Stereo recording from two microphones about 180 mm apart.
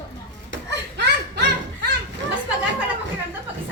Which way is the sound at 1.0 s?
70° right (ahead or behind).